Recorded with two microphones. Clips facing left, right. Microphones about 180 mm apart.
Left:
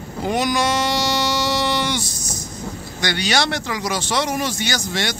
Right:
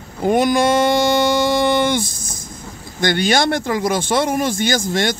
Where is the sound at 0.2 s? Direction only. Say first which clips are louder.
Right 5 dB; 50° right (ahead or behind).